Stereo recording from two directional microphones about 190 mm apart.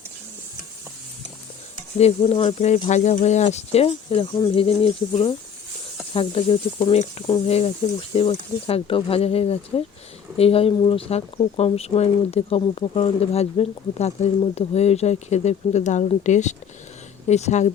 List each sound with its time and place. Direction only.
2.0 s speech: 30° left (ahead or behind)